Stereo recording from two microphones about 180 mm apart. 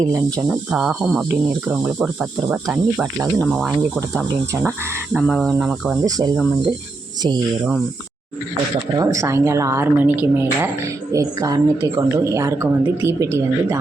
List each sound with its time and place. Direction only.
0.0 s speech: 15° right (ahead or behind)
0.7 s speech: 5° right (ahead or behind)
3.6 s speech: centre (ahead or behind); by 6.3 s 20° right (ahead or behind)
9.0 s speech: 20° right (ahead or behind)